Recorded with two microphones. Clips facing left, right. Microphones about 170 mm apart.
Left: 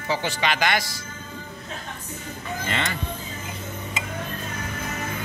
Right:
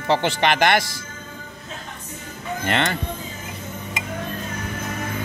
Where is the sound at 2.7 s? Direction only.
65° right (ahead or behind).